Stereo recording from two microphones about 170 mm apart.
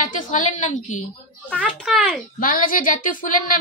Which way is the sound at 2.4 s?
55° left (ahead or behind).